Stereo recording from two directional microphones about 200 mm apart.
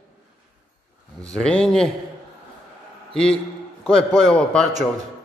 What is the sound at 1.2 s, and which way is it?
Speech, 5° left (ahead or behind).